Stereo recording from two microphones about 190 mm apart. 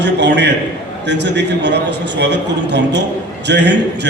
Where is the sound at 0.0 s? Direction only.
65° right (ahead or behind).